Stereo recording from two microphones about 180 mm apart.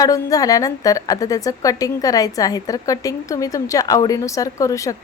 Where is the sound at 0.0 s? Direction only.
20° left (ahead or behind).